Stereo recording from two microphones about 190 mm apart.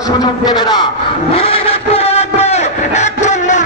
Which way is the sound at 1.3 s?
30° left (ahead or behind).